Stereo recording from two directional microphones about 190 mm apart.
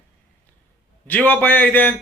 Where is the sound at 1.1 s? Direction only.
10° left (ahead or behind).